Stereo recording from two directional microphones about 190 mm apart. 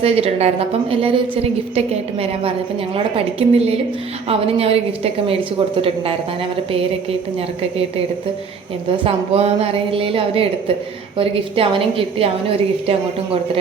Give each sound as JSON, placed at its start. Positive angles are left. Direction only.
{"t": 0.0, "sound": "a woman's voice", "side_deg": -30}
{"t": 9.0, "sound": "a woman's voice", "side_deg": -30}